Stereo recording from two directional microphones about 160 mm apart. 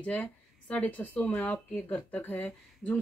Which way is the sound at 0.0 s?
10° left (ahead or behind).